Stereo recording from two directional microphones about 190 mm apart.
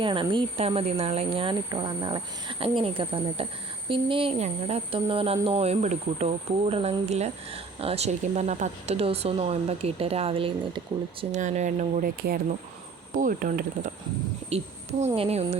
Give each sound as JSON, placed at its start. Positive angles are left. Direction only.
{"t": 0.0, "sound": "speech", "side_deg": -25}
{"t": 14.5, "sound": "speech", "side_deg": -35}